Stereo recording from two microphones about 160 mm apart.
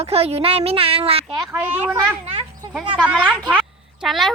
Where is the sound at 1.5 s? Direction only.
10° right (ahead or behind).